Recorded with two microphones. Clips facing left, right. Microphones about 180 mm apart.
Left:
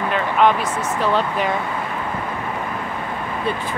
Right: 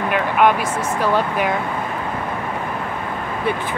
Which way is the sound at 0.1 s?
10° right (ahead or behind).